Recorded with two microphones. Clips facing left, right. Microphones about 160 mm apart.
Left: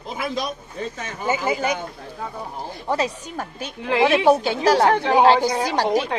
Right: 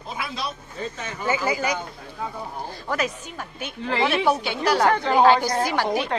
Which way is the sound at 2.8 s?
30° left (ahead or behind).